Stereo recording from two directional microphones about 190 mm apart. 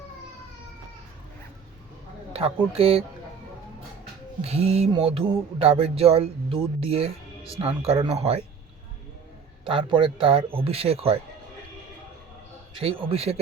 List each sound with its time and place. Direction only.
2.3 s a man's voice: 30° right (ahead or behind)
4.4 s a man's voice: 35° right (ahead or behind)
9.6 s a man's voice: 25° right (ahead or behind)
12.8 s a man's voice: 30° right (ahead or behind)